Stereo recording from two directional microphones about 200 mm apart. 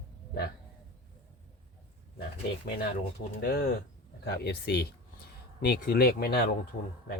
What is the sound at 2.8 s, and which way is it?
Speech, 50° left (ahead or behind).